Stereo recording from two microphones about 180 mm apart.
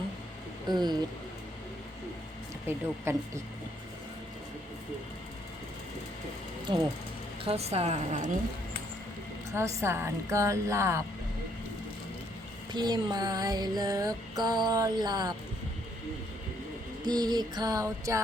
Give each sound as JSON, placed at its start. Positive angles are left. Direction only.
{"t": 0.7, "sound": "music", "side_deg": -25}
{"t": 2.6, "sound": "a woman's voice", "side_deg": -15}
{"t": 6.7, "sound": "music", "side_deg": -25}
{"t": 7.4, "sound": "a woman's voice", "side_deg": -35}
{"t": 9.5, "sound": "a woman's voice", "side_deg": -15}
{"t": 12.7, "sound": "music", "side_deg": -25}
{"t": 17.0, "sound": "music", "side_deg": -20}